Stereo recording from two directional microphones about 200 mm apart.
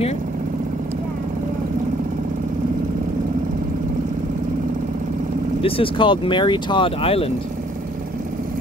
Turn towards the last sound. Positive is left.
turn(degrees=30)  # may be behind; listen again after turning